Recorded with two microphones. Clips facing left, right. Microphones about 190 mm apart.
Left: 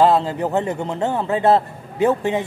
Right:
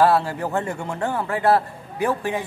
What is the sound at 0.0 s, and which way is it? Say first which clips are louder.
A man's voice: left 2 dB; 20° left (ahead or behind).